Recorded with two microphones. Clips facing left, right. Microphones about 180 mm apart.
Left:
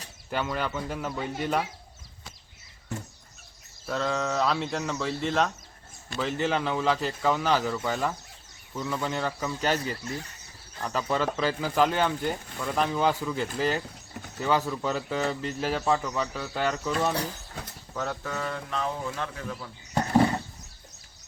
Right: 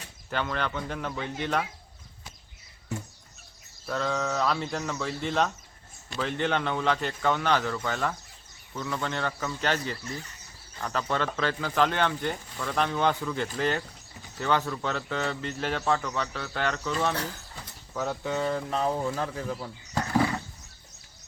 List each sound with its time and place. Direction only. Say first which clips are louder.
0.3 s speech: left 1 dB; 10° left (ahead or behind)
3.8 s speech: left 1 dB; centre (ahead or behind)
17.9 s speech: right 1 dB; 10° right (ahead or behind)
18.3 s speech: right 4 dB; 25° right (ahead or behind)
19.9 s a sound: left 4 dB; 25° left (ahead or behind)